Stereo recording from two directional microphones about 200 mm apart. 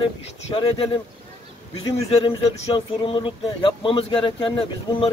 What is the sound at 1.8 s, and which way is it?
Speech, 25° left (ahead or behind).